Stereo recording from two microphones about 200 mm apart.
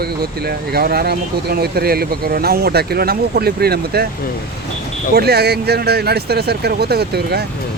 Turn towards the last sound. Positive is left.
turn(degrees=-55)  # may be behind; listen again after turning